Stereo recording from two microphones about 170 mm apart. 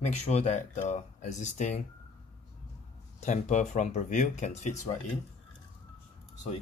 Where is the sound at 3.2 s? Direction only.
45° left (ahead or behind).